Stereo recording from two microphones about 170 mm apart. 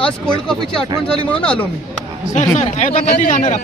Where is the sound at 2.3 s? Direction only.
45° left (ahead or behind).